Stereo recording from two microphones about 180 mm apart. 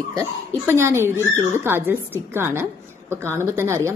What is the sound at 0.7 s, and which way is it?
A woman's voice, 15° right (ahead or behind).